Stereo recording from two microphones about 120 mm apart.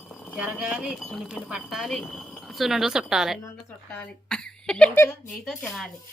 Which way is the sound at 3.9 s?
5° left (ahead or behind).